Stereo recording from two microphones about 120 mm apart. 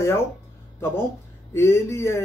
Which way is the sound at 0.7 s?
20° left (ahead or behind).